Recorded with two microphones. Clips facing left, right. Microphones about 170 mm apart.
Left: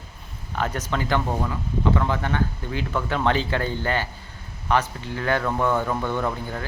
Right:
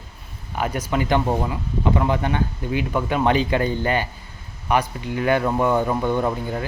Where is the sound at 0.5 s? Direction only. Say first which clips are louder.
Right 3 dB; 10° right (ahead or behind).